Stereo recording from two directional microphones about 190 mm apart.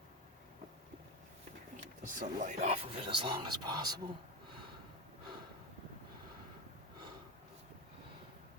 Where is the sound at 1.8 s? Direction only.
40° right (ahead or behind); by 4.0 s 20° right (ahead or behind).